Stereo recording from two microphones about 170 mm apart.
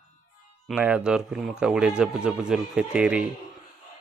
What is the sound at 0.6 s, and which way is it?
A man's voice, 10° right (ahead or behind).